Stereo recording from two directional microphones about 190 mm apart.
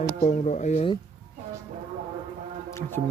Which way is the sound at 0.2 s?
35° left (ahead or behind).